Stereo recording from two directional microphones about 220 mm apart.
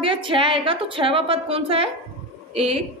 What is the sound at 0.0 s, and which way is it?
A woman's voice, 25° right (ahead or behind).